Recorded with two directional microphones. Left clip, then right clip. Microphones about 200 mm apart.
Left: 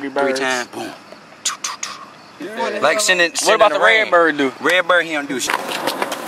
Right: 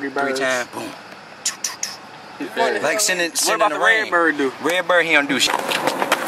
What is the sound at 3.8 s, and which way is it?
Speech, 40° left (ahead or behind).